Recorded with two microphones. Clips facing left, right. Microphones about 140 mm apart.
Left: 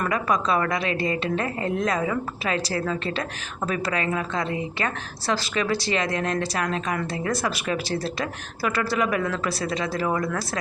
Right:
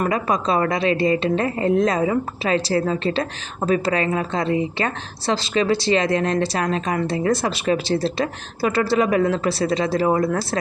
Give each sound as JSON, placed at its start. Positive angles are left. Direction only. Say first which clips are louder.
{"t": 0.0, "sound": "a woman's voice", "louder": "right 3 dB", "side_deg": -25}